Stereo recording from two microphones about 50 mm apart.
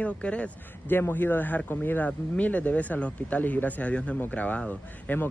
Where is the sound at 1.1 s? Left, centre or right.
Left.